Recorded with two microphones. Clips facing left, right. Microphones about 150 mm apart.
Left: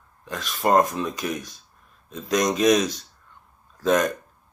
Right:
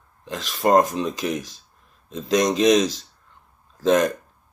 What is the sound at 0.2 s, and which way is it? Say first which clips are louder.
Speech: right 2 dB; 25° right (ahead or behind).